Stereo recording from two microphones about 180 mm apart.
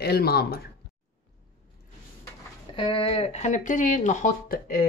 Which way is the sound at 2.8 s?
30° left (ahead or behind).